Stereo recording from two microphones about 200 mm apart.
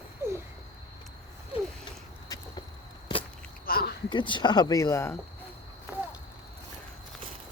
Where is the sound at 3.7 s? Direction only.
50° left (ahead or behind).